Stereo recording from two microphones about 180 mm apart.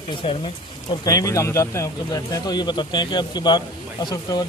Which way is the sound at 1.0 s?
20° left (ahead or behind).